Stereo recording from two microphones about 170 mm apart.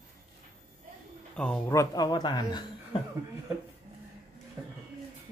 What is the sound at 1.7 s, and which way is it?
Speech, 20° left (ahead or behind).